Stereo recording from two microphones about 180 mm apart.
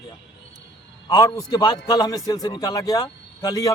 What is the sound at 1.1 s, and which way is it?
Speech, 20° left (ahead or behind).